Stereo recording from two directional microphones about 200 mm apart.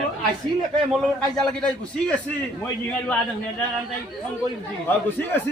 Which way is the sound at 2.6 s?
10° left (ahead or behind).